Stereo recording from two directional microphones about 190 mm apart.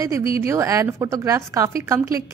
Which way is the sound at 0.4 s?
15° right (ahead or behind).